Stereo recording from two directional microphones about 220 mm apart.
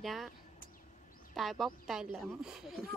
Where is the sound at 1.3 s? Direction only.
Centre (ahead or behind).